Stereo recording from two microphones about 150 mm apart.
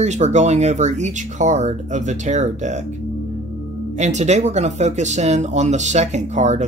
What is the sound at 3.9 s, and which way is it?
Speech, 50° right (ahead or behind).